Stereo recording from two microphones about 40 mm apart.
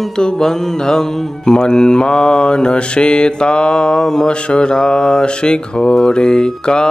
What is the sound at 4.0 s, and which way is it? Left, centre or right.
Mantra, centre.